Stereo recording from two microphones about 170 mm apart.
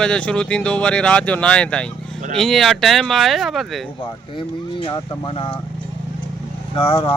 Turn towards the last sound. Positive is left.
turn(degrees=35)  # may be behind; listen again after turning